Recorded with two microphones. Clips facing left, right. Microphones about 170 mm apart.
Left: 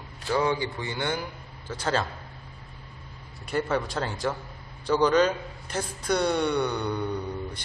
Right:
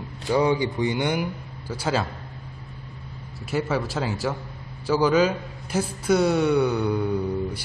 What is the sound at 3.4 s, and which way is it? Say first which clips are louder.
A man's voice: right 2 dB; 5° right (ahead or behind).